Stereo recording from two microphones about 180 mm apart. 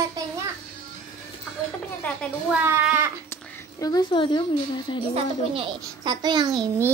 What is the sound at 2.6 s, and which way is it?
Speech, 10° right (ahead or behind).